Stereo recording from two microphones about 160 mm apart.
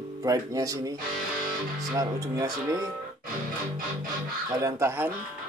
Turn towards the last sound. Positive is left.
turn(degrees=-15)  # may be behind; listen again after turning